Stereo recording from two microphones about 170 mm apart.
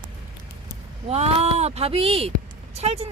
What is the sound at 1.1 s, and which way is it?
Speech, 40° right (ahead or behind).